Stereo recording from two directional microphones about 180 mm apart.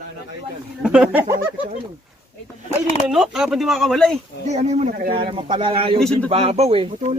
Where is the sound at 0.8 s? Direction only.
5° right (ahead or behind).